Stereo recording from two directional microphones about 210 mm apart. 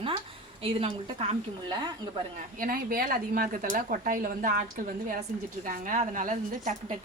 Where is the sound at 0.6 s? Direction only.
25° right (ahead or behind).